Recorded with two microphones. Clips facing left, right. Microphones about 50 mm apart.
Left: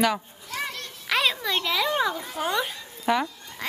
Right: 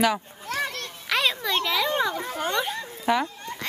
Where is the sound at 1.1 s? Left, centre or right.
Centre.